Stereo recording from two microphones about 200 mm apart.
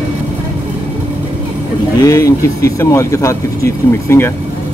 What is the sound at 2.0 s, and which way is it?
Speech, 15° left (ahead or behind).